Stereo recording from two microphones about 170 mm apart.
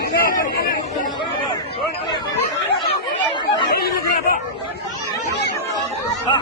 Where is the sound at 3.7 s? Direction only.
60° left (ahead or behind).